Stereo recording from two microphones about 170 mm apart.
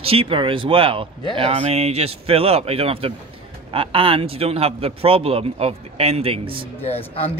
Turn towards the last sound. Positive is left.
turn(degrees=35)  # may be behind; listen again after turning